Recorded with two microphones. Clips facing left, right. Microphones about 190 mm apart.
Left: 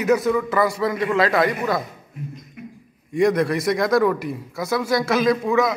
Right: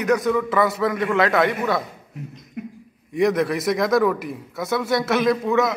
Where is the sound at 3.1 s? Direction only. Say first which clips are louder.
Left 1 dB; centre (ahead or behind).